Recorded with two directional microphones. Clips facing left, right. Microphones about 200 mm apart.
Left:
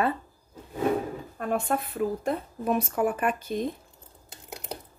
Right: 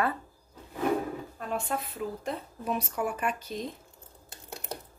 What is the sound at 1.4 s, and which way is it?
A woman's voice, 55° left (ahead or behind).